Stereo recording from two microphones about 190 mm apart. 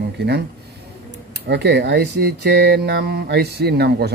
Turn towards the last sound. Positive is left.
turn(degrees=-60)  # may be behind; listen again after turning